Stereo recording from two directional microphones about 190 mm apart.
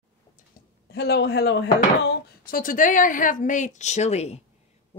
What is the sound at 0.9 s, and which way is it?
Speech, 60° left (ahead or behind).